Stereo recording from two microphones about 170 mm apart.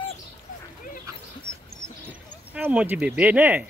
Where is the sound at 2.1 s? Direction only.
10° right (ahead or behind).